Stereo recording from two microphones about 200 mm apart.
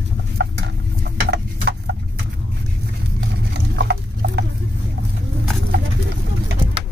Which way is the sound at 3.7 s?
55° right (ahead or behind).